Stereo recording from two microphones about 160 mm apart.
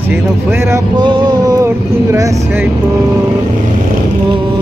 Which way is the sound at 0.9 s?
30° right (ahead or behind).